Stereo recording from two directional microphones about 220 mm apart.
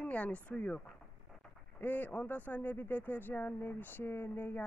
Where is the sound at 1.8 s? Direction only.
10° left (ahead or behind).